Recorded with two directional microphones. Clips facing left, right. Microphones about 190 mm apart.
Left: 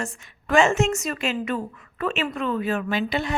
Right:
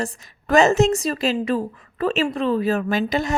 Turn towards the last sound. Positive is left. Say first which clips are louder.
# right 3 dB
turn(degrees=-40)  # may be behind; listen again after turning